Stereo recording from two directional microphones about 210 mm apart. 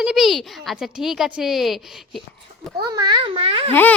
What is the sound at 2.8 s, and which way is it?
Speech, 20° right (ahead or behind).